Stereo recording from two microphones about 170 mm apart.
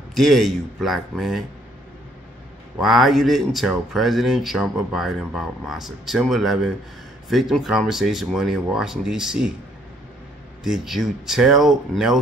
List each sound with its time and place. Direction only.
0.1 s speech: centre (ahead or behind)
2.8 s speech: centre (ahead or behind)
10.6 s speech: centre (ahead or behind)